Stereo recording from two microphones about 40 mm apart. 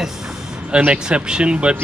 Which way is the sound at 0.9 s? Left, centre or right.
Right.